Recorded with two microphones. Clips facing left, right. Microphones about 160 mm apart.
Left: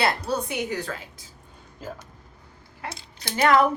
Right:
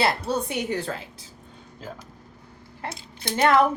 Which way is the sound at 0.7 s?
30° right (ahead or behind).